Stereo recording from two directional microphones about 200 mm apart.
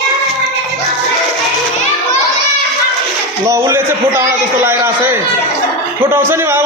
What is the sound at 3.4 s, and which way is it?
A man's voice, 15° right (ahead or behind).